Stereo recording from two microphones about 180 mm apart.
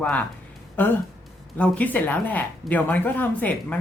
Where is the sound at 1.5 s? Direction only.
5° left (ahead or behind).